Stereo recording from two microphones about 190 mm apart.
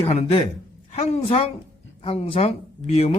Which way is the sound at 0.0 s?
35° left (ahead or behind).